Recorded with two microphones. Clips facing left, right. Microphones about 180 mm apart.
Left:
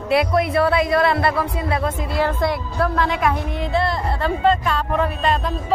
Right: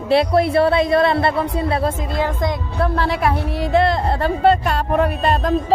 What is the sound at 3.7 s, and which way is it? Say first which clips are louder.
Speech: right 6 dB; 50° right (ahead or behind).